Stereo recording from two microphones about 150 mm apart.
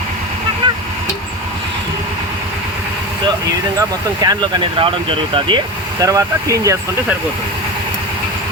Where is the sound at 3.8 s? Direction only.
25° right (ahead or behind).